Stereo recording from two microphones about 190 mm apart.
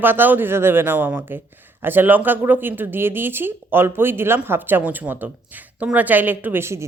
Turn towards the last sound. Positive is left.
turn(degrees=-15)  # may be behind; listen again after turning